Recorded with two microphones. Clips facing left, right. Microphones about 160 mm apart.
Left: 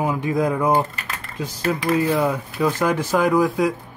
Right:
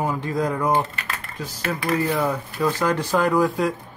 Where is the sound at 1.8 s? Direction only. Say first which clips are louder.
Left 2 dB; 20° left (ahead or behind).